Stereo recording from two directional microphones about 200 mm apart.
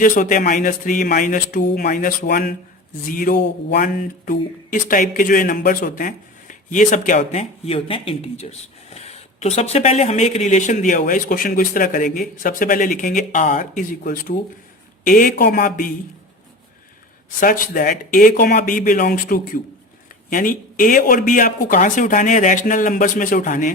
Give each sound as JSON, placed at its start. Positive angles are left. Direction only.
{"t": 0.0, "sound": "a man's voice", "side_deg": 45}
{"t": 17.4, "sound": "a man's voice", "side_deg": 45}